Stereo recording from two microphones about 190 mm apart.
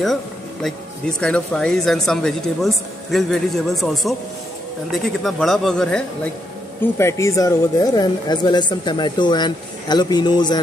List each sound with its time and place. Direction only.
0.0 s speech: centre (ahead or behind); by 10.6 s 20° left (ahead or behind)